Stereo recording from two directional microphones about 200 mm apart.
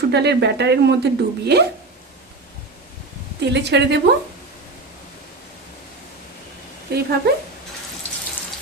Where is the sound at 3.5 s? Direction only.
60° right (ahead or behind).